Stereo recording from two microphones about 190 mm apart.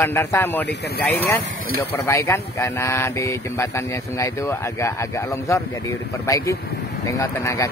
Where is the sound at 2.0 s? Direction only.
15° left (ahead or behind).